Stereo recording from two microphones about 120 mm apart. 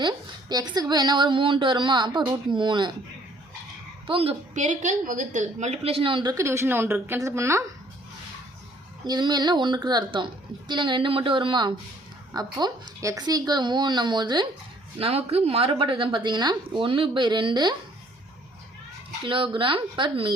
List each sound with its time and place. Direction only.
0.0 s a woman's voice: 40° right (ahead or behind)
4.0 s a woman's voice: 55° right (ahead or behind)
4.5 s a woman's voice: 90° right; by 6.3 s 45° right (ahead or behind)
6.3 s a woman's voice: 25° right (ahead or behind)
9.0 s a woman's voice: 35° right (ahead or behind)
14.9 s a woman's voice: 55° right (ahead or behind); by 17.7 s 40° right (ahead or behind)
19.2 s a woman's voice: 45° right (ahead or behind)